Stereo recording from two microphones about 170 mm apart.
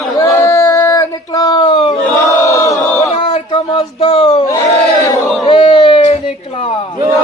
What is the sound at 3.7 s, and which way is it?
A man's voice, 35° left (ahead or behind).